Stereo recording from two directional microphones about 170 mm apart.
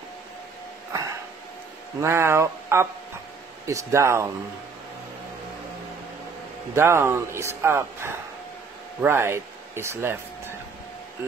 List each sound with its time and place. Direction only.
2.0 s speech: 15° right (ahead or behind)
6.7 s speech: 15° right (ahead or behind)